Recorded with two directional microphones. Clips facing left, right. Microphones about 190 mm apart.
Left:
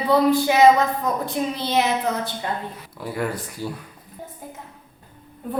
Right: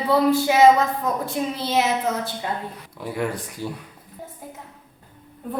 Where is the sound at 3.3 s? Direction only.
15° right (ahead or behind).